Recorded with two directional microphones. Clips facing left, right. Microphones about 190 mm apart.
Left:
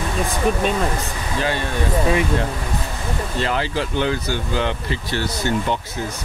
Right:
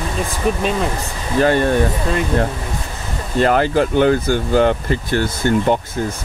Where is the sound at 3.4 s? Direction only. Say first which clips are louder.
Right 9 dB; 50° right (ahead or behind).